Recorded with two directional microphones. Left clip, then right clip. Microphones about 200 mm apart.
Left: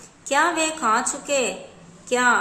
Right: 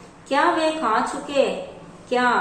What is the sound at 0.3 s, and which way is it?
Speech, 35° left (ahead or behind).